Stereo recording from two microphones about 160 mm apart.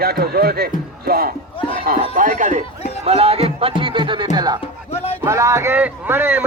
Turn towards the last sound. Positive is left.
turn(degrees=-10)  # may be behind; listen again after turning